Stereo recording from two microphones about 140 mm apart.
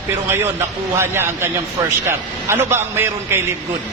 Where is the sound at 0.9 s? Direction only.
15° right (ahead or behind).